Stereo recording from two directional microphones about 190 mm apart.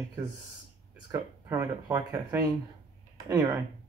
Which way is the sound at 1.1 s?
20° right (ahead or behind).